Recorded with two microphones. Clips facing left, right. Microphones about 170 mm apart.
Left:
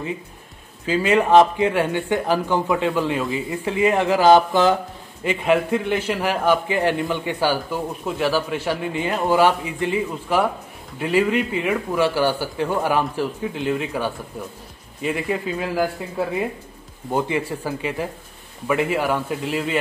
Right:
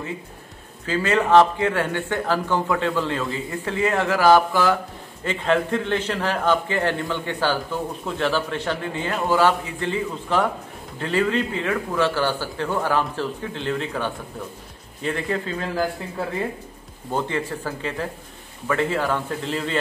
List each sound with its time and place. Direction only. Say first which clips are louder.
0.8 s a man's voice: left 3 dB; 15° left (ahead or behind)
17.1 s a man's voice: left 3 dB; 10° left (ahead or behind)